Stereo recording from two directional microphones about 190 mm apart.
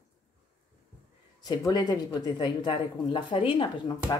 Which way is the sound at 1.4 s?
20° left (ahead or behind).